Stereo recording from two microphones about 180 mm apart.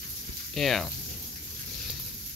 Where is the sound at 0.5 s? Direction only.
Centre (ahead or behind).